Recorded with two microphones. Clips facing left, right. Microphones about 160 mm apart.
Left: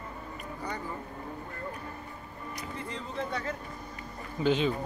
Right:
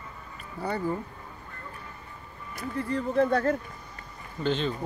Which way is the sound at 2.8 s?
60° right (ahead or behind).